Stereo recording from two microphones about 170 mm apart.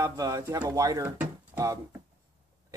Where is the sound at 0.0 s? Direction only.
20° right (ahead or behind).